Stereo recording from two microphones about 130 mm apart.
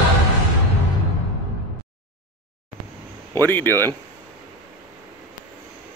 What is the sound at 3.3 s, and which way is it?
Speech, 15° left (ahead or behind).